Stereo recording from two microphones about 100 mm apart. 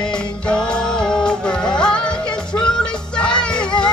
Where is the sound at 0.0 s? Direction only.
10° left (ahead or behind).